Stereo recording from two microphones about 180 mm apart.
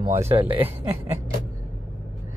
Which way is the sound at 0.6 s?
10° right (ahead or behind).